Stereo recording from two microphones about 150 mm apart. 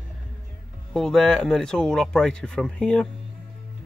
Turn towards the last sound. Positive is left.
turn(degrees=5)  # may be behind; listen again after turning